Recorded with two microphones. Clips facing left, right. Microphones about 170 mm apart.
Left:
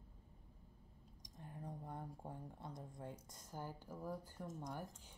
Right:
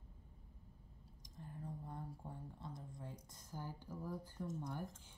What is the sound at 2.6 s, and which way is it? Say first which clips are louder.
Speech: left 2 dB; 20° left (ahead or behind).